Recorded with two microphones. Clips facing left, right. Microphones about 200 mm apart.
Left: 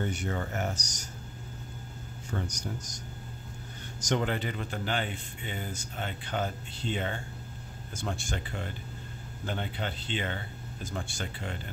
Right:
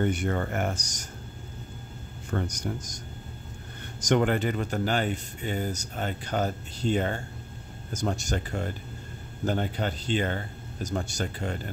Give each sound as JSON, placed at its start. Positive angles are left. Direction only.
{"t": 0.0, "sound": "speech", "side_deg": -55}
{"t": 2.3, "sound": "speech", "side_deg": -55}
{"t": 4.0, "sound": "speech", "side_deg": -55}